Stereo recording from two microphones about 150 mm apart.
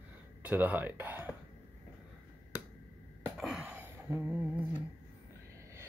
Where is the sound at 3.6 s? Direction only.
15° right (ahead or behind).